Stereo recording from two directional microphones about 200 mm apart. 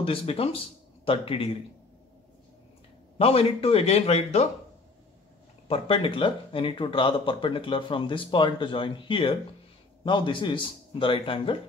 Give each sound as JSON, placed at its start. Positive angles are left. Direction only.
{"t": 0.0, "sound": "a man's voice", "side_deg": 30}
{"t": 3.2, "sound": "a man's voice", "side_deg": 30}
{"t": 5.7, "sound": "speech", "side_deg": 25}